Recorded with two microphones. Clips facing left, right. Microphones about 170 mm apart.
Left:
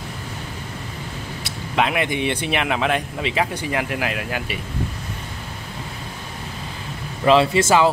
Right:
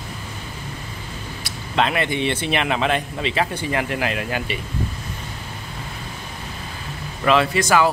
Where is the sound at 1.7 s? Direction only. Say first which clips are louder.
Even; 10° left (ahead or behind).